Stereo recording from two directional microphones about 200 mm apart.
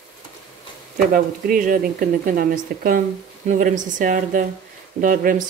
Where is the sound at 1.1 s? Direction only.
45° right (ahead or behind).